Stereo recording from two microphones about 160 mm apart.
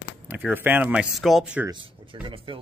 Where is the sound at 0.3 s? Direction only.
10° right (ahead or behind).